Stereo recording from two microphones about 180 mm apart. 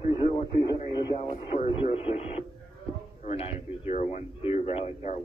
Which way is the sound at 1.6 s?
35° left (ahead or behind).